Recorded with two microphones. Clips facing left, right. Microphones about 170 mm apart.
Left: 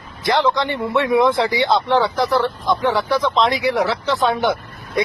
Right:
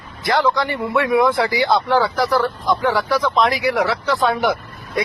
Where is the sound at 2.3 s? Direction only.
Centre (ahead or behind).